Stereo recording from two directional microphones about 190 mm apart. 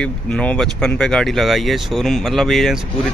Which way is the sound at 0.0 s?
5° left (ahead or behind).